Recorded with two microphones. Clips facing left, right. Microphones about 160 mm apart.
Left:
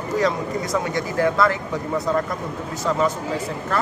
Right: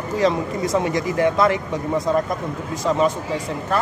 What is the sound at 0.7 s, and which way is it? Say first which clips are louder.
Speech: right 3 dB; 20° right (ahead or behind).